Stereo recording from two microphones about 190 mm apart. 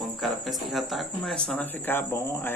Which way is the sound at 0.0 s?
Centre (ahead or behind).